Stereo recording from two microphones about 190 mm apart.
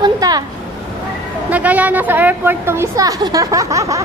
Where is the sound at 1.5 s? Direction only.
10° right (ahead or behind).